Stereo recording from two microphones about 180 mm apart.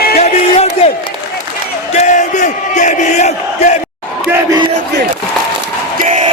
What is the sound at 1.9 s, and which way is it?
Crowd, 40° left (ahead or behind).